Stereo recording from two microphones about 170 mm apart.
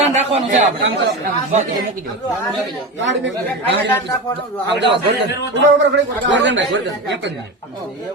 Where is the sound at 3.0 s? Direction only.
90° right.